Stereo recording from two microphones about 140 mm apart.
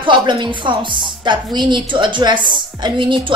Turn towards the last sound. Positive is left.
turn(degrees=-35)  # may be behind; listen again after turning